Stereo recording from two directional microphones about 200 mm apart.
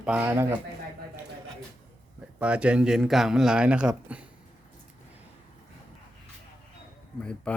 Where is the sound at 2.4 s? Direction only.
5° right (ahead or behind).